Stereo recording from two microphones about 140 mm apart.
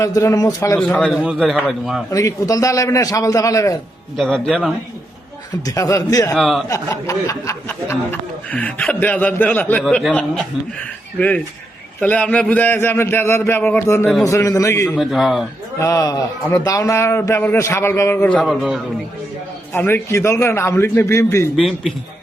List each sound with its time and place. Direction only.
0.0 s a man's voice: 20° left (ahead or behind)
0.8 s a man's voice: 10° left (ahead or behind)
2.0 s a man's voice: 25° left (ahead or behind)
4.2 s a man's voice: 5° left (ahead or behind)
5.6 s a man's voice: 20° left (ahead or behind)
6.3 s a man's voice: centre (ahead or behind)
6.7 s speech: 20° left (ahead or behind)
9.8 s a man's voice: centre (ahead or behind)
11.9 s a man's voice: 10° left (ahead or behind)
14.9 s a man's voice: centre (ahead or behind)
15.8 s a man's voice: 25° left (ahead or behind); by 18.8 s centre (ahead or behind)
19.7 s a man's voice: 15° left (ahead or behind)
21.5 s a man's voice: centre (ahead or behind)